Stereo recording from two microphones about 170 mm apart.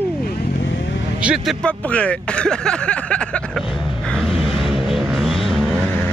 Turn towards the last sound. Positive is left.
turn(degrees=0)  # may be behind; listen again after turning